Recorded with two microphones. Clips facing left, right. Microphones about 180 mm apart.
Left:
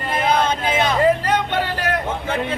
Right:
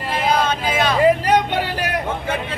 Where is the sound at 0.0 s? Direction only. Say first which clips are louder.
Even; 5° right (ahead or behind).